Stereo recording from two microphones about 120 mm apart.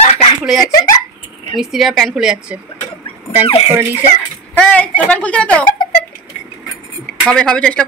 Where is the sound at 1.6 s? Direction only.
Centre (ahead or behind).